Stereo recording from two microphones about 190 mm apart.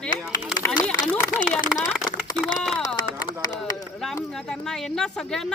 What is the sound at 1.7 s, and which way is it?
Speech, centre (ahead or behind).